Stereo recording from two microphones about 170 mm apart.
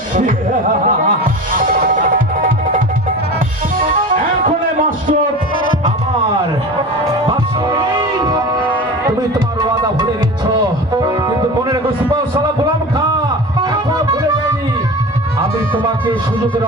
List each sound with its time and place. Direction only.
0.1 s speech: 55° right (ahead or behind)
1.5 s music: 50° right (ahead or behind)
7.0 s music: 20° right (ahead or behind)
11.0 s music: 20° right (ahead or behind)